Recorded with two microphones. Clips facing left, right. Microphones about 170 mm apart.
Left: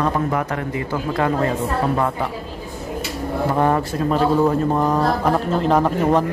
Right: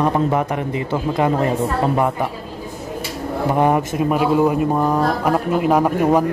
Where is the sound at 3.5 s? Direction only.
15° right (ahead or behind).